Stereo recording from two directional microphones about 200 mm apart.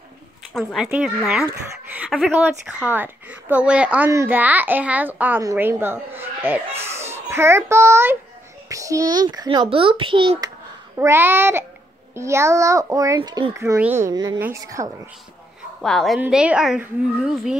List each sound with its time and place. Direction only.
0.5 s a woman's voice: centre (ahead or behind); by 10.5 s 25° right (ahead or behind)
11.0 s speech: 10° right (ahead or behind)
15.8 s a woman's voice: centre (ahead or behind)